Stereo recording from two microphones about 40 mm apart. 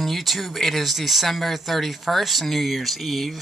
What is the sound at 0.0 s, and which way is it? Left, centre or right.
Speech, centre.